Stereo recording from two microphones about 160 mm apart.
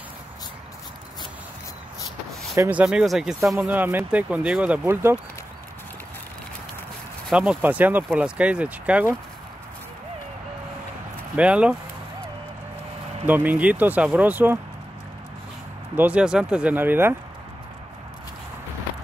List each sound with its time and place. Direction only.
2.5 s speech: 15° right (ahead or behind)
7.2 s speech: 5° right (ahead or behind)
11.3 s speech: 5° right (ahead or behind)
13.3 s speech: 10° right (ahead or behind)
16.0 s speech: 5° right (ahead or behind)